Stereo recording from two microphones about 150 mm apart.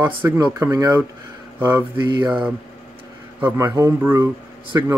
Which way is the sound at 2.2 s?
10° right (ahead or behind).